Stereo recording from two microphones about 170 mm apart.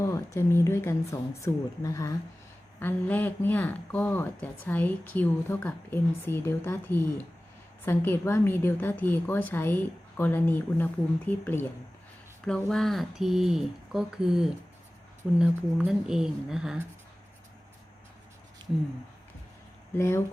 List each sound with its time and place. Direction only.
0.0 s speech: 15° left (ahead or behind); by 16.8 s 5° right (ahead or behind)
20.0 s speech: 15° left (ahead or behind)